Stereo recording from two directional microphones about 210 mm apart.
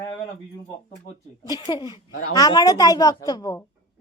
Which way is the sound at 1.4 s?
20° left (ahead or behind).